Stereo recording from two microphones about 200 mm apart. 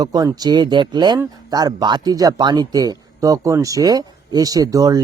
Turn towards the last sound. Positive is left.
turn(degrees=-15)  # may be behind; listen again after turning